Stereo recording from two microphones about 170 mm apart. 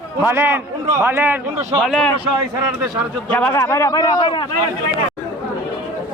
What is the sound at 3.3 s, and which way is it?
A man's voice, 10° left (ahead or behind).